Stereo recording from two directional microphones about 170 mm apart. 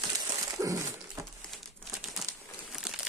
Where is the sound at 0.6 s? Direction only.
20° right (ahead or behind).